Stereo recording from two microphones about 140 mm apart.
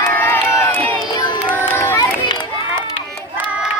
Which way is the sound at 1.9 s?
30° left (ahead or behind).